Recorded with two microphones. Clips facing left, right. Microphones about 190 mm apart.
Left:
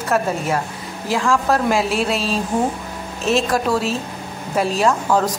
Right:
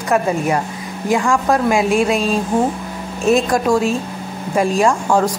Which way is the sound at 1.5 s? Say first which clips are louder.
Right 3 dB; 15° right (ahead or behind).